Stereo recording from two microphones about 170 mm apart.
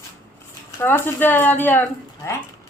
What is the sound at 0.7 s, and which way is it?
Speech, 15° left (ahead or behind).